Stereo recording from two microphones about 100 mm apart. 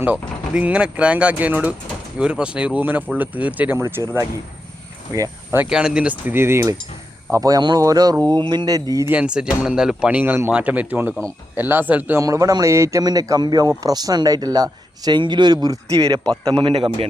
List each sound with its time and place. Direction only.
0.0 s speech: 15° right (ahead or behind)
3.8 s speech: 25° right (ahead or behind)
5.1 s speech: 35° right (ahead or behind)
5.6 s a man's voice: 5° right (ahead or behind); by 8.1 s 35° right (ahead or behind)
8.2 s mantra: 45° right (ahead or behind)
9.0 s speech: 10° right (ahead or behind)
12.2 s a man's voice: 35° right (ahead or behind)
15.6 s a man's voice: 35° right (ahead or behind)
16.2 s a man's voice: 10° left (ahead or behind)
16.6 s a man's voice: 55° right (ahead or behind)